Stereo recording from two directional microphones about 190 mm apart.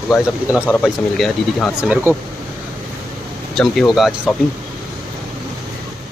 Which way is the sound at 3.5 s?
Centre (ahead or behind).